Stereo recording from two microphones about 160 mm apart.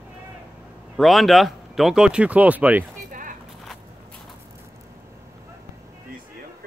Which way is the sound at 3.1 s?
55° right (ahead or behind).